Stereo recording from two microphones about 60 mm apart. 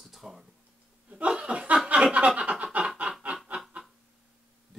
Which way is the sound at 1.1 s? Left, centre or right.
Centre.